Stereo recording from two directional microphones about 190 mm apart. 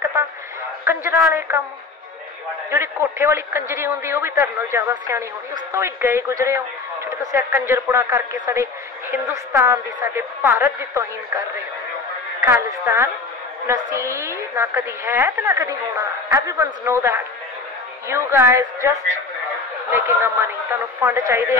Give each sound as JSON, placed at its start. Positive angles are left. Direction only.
{"t": 0.8, "sound": "a man's voice", "side_deg": -15}
{"t": 2.7, "sound": "a man's voice", "side_deg": -15}
{"t": 12.4, "sound": "a man's voice", "side_deg": -15}